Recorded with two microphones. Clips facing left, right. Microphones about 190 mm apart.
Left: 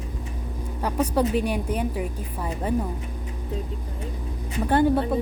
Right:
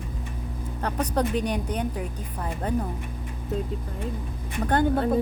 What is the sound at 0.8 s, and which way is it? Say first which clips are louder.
A woman's voice: left 3 dB; 10° left (ahead or behind).